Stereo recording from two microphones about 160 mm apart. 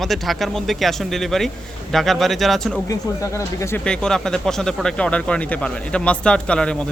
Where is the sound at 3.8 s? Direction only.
5° left (ahead or behind).